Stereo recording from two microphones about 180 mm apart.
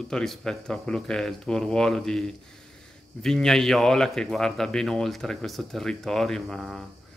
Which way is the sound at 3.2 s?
5° left (ahead or behind).